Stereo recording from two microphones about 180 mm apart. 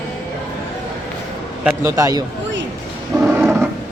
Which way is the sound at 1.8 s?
15° right (ahead or behind).